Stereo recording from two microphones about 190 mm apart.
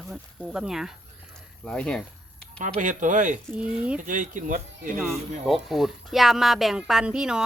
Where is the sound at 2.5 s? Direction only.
40° right (ahead or behind).